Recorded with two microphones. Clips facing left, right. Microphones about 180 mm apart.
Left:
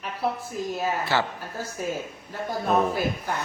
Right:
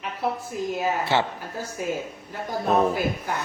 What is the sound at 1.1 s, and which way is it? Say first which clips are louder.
Speech: right 2 dB; 25° right (ahead or behind).